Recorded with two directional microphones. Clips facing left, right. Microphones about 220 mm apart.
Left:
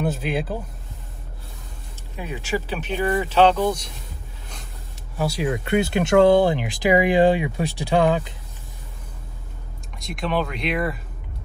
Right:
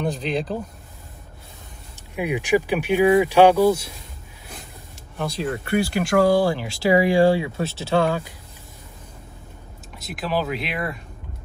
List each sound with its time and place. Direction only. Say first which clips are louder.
0.0 s speech: even; 5° left (ahead or behind)
2.1 s speech: right 7 dB; 15° right (ahead or behind)
5.1 s speech: left 2 dB; 10° left (ahead or behind)
9.9 s speech: left 1 dB; centre (ahead or behind)